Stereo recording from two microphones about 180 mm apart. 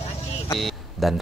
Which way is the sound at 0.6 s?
Centre (ahead or behind).